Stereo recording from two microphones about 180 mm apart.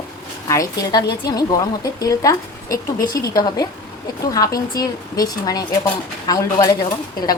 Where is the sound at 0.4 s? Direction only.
20° left (ahead or behind).